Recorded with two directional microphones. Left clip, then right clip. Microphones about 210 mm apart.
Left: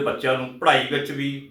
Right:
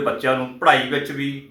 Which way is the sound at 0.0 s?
5° left (ahead or behind).